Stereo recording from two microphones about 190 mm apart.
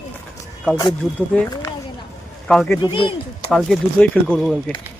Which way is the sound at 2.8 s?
25° left (ahead or behind).